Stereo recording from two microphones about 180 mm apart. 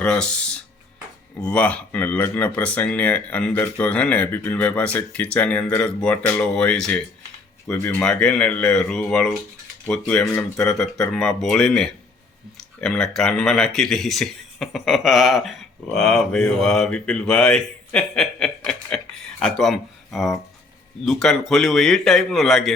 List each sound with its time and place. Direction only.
0.0 s speech: 5° left (ahead or behind)